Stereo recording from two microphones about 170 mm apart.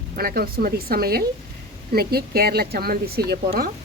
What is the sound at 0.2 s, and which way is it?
A woman's voice, 60° right (ahead or behind).